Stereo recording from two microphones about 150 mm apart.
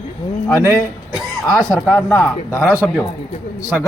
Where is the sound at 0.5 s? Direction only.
15° left (ahead or behind).